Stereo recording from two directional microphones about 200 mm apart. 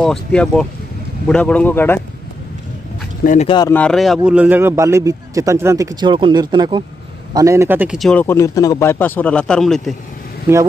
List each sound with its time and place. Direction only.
0.0 s a man's voice: 5° left (ahead or behind)
3.3 s speech: 35° left (ahead or behind)
3.7 s a man's voice: 5° left (ahead or behind)
10.5 s a man's voice: 10° right (ahead or behind)